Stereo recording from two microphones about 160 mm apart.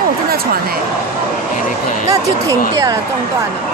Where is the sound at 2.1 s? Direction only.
20° right (ahead or behind).